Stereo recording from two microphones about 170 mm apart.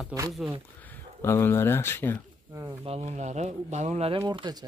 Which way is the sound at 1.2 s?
15° left (ahead or behind).